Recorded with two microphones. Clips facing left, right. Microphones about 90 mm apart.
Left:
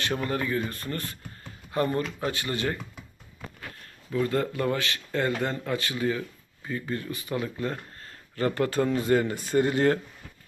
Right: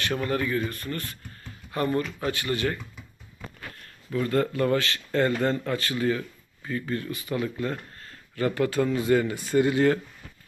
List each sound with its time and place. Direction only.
0.0 s speech: 25° left (ahead or behind)
4.2 s speech: 20° left (ahead or behind); by 9.9 s 40° left (ahead or behind)